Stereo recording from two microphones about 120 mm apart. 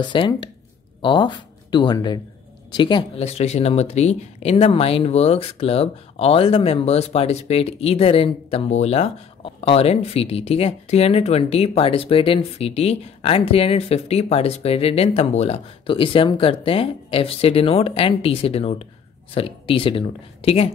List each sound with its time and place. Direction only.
0.0 s speech: 40° left (ahead or behind)
3.2 s speech: 60° left (ahead or behind)